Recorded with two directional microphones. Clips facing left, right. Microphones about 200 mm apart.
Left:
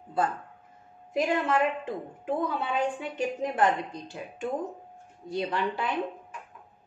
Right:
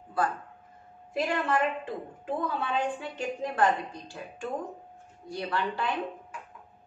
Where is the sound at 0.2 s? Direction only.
25° left (ahead or behind).